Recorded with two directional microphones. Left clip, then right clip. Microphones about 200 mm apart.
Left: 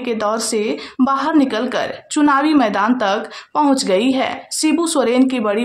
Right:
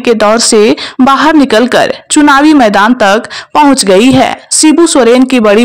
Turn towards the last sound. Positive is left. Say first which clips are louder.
# right 11 dB
turn(degrees=-40)  # may be behind; listen again after turning